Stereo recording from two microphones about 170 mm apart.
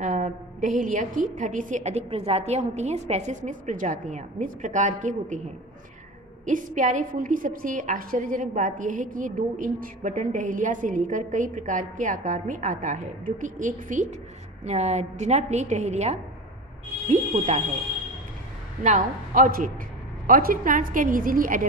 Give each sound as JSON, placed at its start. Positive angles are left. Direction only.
{"t": 0.0, "sound": "a woman's voice", "side_deg": -50}
{"t": 6.4, "sound": "a woman's voice", "side_deg": -50}
{"t": 18.8, "sound": "a woman's voice", "side_deg": -50}